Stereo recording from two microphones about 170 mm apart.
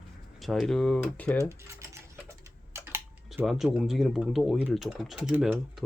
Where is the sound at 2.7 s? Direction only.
15° right (ahead or behind).